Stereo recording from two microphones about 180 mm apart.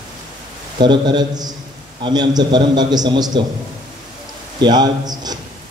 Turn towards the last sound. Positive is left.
turn(degrees=-20)  # may be behind; listen again after turning